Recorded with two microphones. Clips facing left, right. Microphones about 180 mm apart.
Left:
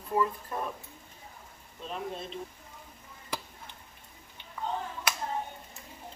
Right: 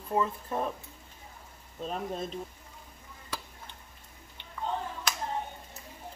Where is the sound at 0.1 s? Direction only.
25° right (ahead or behind).